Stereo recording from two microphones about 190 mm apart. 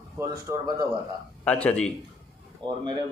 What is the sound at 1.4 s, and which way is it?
Speech, 5° left (ahead or behind).